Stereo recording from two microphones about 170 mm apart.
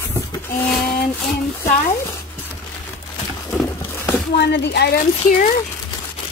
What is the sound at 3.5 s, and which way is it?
Horse, 10° left (ahead or behind).